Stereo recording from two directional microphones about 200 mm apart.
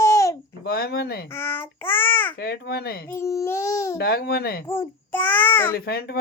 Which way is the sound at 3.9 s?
55° left (ahead or behind).